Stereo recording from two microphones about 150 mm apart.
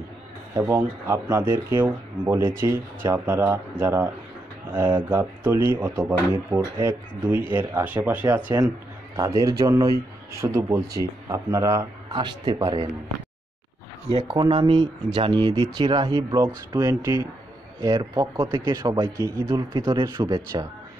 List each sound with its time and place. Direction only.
0.6 s speech: 15° right (ahead or behind)
9.1 s speech: 20° right (ahead or behind)
14.2 s speech: 30° right (ahead or behind)
18.4 s speech: 35° right (ahead or behind)